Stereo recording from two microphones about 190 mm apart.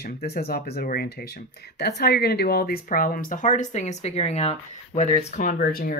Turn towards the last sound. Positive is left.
turn(degrees=50)  # may be behind; listen again after turning